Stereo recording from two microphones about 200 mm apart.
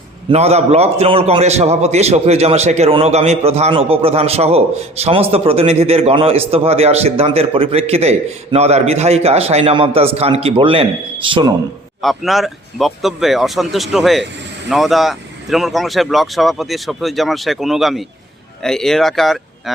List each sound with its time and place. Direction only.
0.3 s a man's voice: 30° right (ahead or behind)
12.0 s speech: centre (ahead or behind)